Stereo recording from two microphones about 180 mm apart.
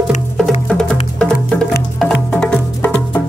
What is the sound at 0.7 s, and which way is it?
Music, 5° left (ahead or behind).